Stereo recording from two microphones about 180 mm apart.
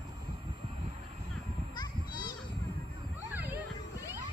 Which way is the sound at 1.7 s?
25° left (ahead or behind).